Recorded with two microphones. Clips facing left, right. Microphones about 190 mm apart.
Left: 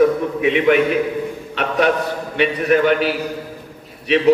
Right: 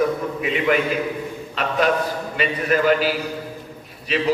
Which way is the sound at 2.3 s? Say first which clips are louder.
Left 6 dB; 65° left (ahead or behind).